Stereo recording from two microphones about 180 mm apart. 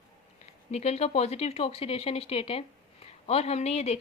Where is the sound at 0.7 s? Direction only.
35° left (ahead or behind).